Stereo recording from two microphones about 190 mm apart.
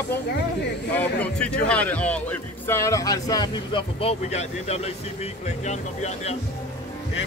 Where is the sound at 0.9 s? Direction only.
5° left (ahead or behind); by 6.3 s 35° left (ahead or behind).